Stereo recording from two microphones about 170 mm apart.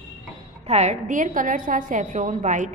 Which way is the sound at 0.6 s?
40° right (ahead or behind).